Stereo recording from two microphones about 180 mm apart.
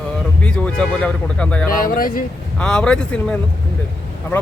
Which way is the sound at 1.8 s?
55° left (ahead or behind).